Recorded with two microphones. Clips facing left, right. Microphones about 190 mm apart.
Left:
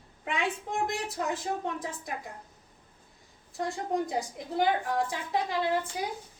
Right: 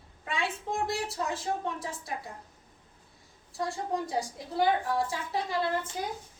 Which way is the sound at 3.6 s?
20° left (ahead or behind).